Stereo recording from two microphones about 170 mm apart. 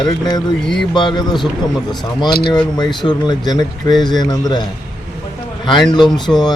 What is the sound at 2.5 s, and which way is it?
Speech, 25° left (ahead or behind).